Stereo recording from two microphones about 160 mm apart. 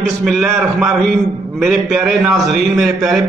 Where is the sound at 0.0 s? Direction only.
Centre (ahead or behind).